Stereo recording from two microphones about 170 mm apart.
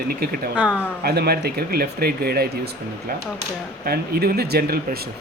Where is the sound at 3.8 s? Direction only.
65° right (ahead or behind).